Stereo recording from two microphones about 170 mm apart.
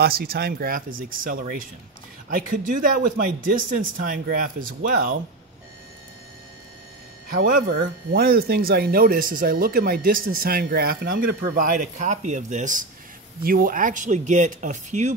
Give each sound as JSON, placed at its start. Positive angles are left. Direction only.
{"t": 0.0, "sound": "speech", "side_deg": -60}
{"t": 7.3, "sound": "speech", "side_deg": -55}
{"t": 13.4, "sound": "speech", "side_deg": -60}